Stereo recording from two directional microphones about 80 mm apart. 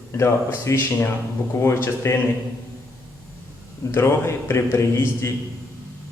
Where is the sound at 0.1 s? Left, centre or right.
Left.